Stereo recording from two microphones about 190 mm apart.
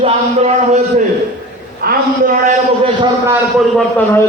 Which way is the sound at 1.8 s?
50° right (ahead or behind).